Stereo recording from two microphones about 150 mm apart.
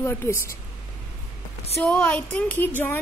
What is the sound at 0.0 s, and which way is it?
Speech, 15° left (ahead or behind).